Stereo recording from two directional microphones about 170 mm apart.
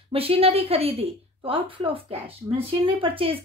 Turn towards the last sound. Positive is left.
turn(degrees=-30)  # may be behind; listen again after turning